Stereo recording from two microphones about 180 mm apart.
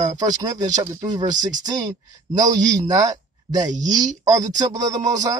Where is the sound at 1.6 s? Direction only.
20° right (ahead or behind).